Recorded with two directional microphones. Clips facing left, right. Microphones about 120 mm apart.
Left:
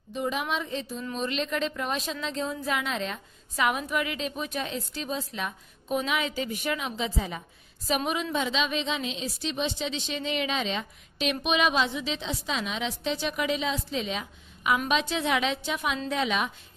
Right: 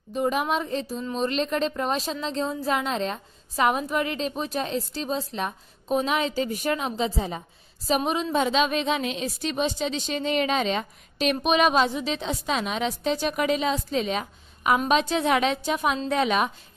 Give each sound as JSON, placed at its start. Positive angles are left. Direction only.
{"t": 0.1, "sound": "a woman's voice", "side_deg": -45}
{"t": 8.4, "sound": "a woman's voice", "side_deg": -45}